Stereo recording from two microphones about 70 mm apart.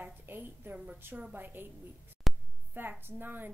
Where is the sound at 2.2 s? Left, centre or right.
Centre.